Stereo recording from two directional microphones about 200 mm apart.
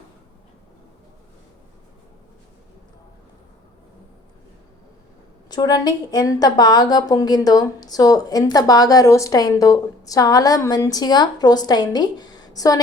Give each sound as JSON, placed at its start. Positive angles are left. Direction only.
{"t": 5.5, "sound": "a woman's voice", "side_deg": 20}